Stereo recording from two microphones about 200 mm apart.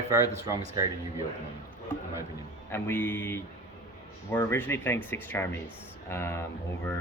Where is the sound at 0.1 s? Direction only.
15° right (ahead or behind).